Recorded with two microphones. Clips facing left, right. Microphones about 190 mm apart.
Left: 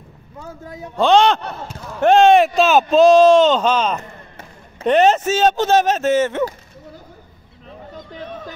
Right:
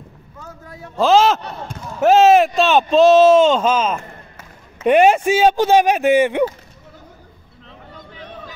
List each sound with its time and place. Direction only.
0.4 s a man's voice: 20° left (ahead or behind)
0.9 s speech: centre (ahead or behind)
7.9 s a sound: 40° left (ahead or behind)